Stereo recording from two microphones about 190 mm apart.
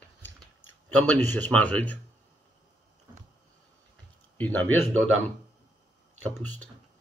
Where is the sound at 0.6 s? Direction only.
90° right.